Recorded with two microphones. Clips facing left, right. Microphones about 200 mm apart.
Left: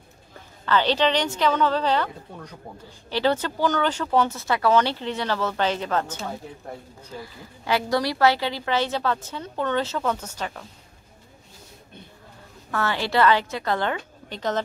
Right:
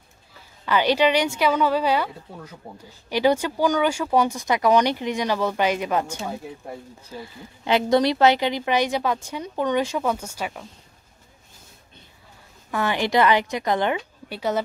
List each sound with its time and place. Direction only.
0.7 s speech: 10° right (ahead or behind)
7.6 s speech: 20° right (ahead or behind)
12.7 s speech: 15° right (ahead or behind)